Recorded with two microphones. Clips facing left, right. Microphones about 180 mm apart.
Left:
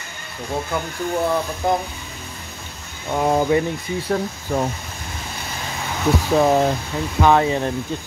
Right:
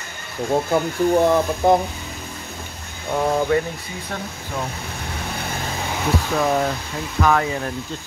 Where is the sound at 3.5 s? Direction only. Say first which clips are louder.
Even; 20° left (ahead or behind).